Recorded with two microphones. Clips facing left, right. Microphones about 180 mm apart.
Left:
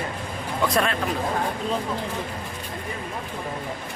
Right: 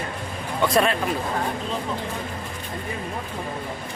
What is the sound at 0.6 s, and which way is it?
Speech, centre (ahead or behind).